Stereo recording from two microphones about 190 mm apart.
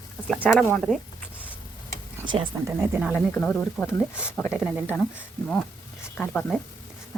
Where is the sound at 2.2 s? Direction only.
25° right (ahead or behind).